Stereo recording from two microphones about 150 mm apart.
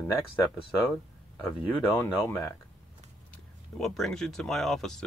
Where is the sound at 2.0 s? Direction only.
15° left (ahead or behind).